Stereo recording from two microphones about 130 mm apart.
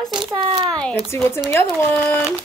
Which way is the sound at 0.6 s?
5° left (ahead or behind).